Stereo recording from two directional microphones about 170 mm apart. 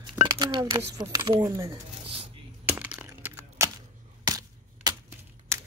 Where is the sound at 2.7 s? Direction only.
10° right (ahead or behind).